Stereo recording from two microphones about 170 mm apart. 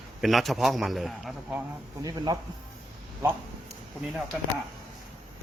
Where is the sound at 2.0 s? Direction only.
25° right (ahead or behind).